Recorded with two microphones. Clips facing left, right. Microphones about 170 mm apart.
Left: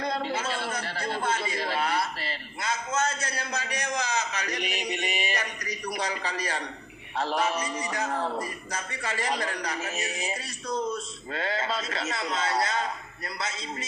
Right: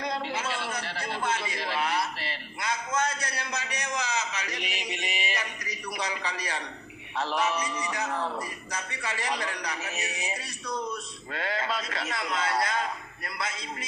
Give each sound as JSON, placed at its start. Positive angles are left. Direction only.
{"t": 0.3, "sound": "a sound", "side_deg": 30}
{"t": 4.0, "sound": "music", "side_deg": 35}
{"t": 5.9, "sound": "a man's voice", "side_deg": 50}
{"t": 7.7, "sound": "a man's voice", "side_deg": 45}
{"t": 9.8, "sound": "speech", "side_deg": 30}